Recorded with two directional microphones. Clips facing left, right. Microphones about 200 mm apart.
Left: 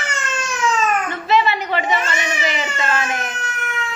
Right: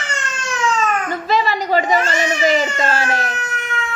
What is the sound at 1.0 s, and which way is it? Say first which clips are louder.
A child's voice: left 1 dB; 40° right (ahead or behind).